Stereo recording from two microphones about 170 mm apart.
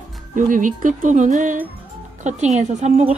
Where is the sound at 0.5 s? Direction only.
50° right (ahead or behind).